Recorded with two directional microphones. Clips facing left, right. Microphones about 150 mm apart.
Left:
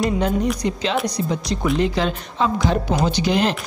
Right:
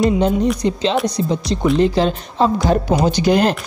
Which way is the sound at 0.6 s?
30° right (ahead or behind).